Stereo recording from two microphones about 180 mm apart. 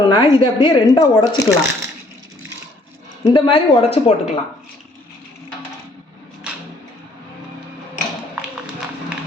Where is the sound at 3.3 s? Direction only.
30° left (ahead or behind).